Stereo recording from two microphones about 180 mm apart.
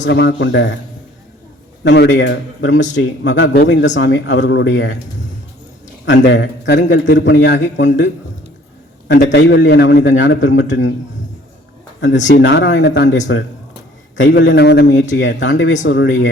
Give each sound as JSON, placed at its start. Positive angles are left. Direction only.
{"t": 0.0, "sound": "a man's voice", "side_deg": 75}
{"t": 1.8, "sound": "speech", "side_deg": 75}
{"t": 6.1, "sound": "a man's voice", "side_deg": 80}
{"t": 12.4, "sound": "a man's voice", "side_deg": 85}
{"t": 14.3, "sound": "a man's voice", "side_deg": 75}